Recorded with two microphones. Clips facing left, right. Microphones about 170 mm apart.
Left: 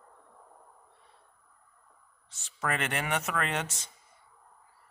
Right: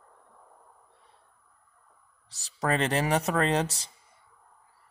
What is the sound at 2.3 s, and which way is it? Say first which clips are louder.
Speech: right 5 dB; 35° right (ahead or behind).